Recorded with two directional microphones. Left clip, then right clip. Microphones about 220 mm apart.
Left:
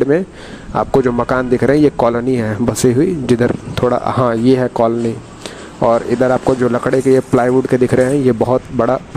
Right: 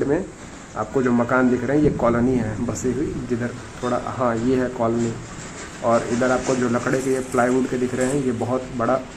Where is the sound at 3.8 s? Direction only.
45° left (ahead or behind).